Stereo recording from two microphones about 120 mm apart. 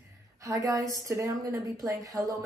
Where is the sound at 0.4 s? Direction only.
30° right (ahead or behind).